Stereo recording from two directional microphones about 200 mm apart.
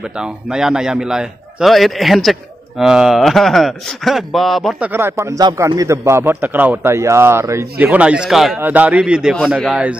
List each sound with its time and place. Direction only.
0.2 s a man's voice: 5° right (ahead or behind)